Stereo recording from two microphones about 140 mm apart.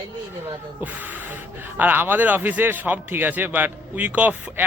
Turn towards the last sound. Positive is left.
turn(degrees=-15)  # may be behind; listen again after turning